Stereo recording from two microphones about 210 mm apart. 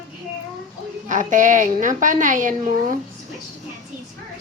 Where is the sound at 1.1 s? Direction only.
35° right (ahead or behind).